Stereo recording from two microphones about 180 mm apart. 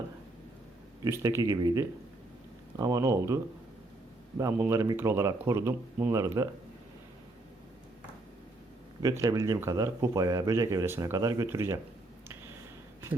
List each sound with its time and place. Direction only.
1.0 s speech: 15° right (ahead or behind)
9.0 s speech: 20° right (ahead or behind)